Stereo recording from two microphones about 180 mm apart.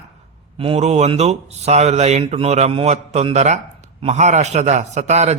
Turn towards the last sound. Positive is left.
turn(degrees=-40)  # may be behind; listen again after turning